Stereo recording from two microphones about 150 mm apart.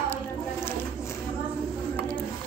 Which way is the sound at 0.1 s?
15° left (ahead or behind).